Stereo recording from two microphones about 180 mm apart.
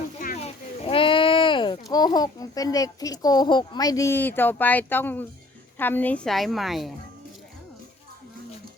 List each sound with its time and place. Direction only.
0.4 s a child's voice: 30° left (ahead or behind); by 6.9 s centre (ahead or behind)